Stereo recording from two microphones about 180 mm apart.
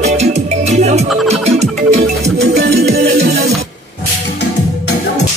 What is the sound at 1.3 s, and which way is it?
Music, 35° right (ahead or behind).